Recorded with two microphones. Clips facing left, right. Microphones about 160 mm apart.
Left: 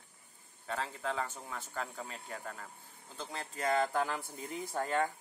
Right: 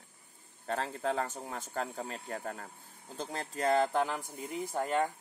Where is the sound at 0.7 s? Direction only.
45° right (ahead or behind); by 5.1 s 15° right (ahead or behind).